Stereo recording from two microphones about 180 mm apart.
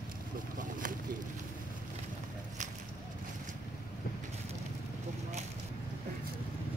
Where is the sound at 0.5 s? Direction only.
45° right (ahead or behind).